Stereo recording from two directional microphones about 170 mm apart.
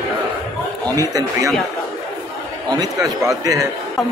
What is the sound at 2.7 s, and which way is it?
A man's voice, 20° right (ahead or behind).